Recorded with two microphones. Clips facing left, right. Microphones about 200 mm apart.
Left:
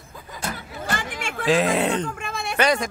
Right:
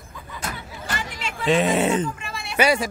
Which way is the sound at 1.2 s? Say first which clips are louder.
Left 1 dB; 50° left (ahead or behind).